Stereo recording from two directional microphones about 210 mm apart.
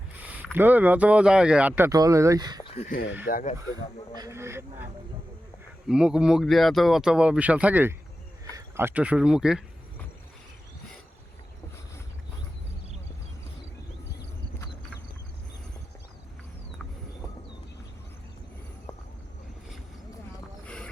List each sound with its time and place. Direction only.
0.3 s speech: 10° right (ahead or behind)
2.6 s speech: 30° left (ahead or behind)
2.9 s speech: 55° left (ahead or behind)
3.2 s speech: 40° left (ahead or behind)
4.1 s speech: 15° right (ahead or behind)
5.9 s speech: 5° right (ahead or behind)